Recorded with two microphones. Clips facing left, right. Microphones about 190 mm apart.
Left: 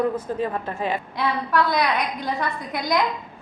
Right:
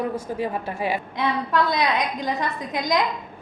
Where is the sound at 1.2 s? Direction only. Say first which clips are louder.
Left 1 dB; 20° right (ahead or behind).